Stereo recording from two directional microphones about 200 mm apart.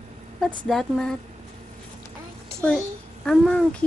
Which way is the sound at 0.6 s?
Centre (ahead or behind).